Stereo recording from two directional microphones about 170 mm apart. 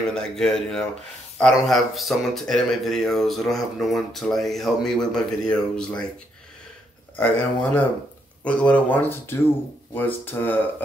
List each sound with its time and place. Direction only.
0.1 s speech: 5° left (ahead or behind)
7.2 s speech: 10° left (ahead or behind)